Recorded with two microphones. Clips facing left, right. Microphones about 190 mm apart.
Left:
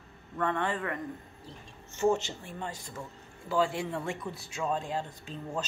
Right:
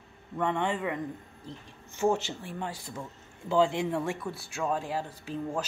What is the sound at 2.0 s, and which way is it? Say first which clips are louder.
Speech: even; 10° right (ahead or behind).